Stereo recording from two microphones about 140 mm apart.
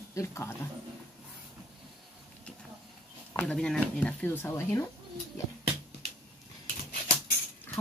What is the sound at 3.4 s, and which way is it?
Speech, 5° left (ahead or behind).